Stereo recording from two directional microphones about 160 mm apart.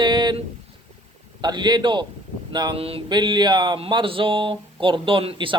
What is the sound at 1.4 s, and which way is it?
A man's voice, 25° right (ahead or behind).